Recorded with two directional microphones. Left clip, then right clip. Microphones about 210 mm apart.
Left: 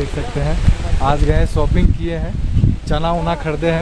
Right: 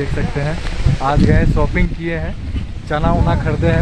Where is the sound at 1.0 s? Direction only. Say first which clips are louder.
Right 1 dB; 5° right (ahead or behind).